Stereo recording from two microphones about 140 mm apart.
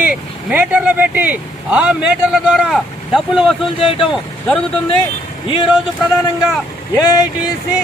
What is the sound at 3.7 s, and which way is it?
Speech, 40° left (ahead or behind).